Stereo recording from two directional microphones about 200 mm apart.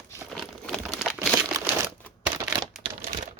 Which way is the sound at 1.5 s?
15° right (ahead or behind).